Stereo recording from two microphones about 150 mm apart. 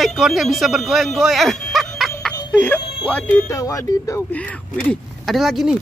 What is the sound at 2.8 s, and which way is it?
Music, 35° left (ahead or behind).